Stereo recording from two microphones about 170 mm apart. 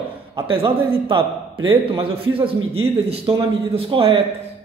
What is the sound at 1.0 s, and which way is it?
A man's voice, 30° right (ahead or behind).